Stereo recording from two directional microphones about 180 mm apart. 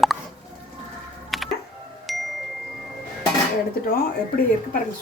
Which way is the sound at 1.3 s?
Centre (ahead or behind).